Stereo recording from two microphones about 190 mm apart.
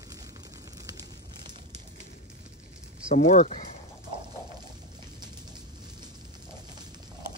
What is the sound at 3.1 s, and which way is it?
Speech, 40° left (ahead or behind).